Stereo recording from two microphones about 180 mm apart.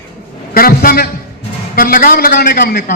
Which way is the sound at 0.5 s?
55° left (ahead or behind).